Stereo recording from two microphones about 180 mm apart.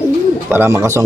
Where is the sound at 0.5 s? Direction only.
15° right (ahead or behind).